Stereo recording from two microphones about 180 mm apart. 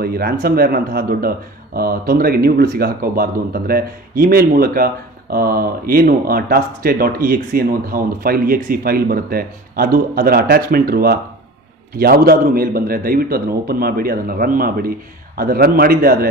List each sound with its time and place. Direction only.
0.0 s a man's voice: 55° right (ahead or behind)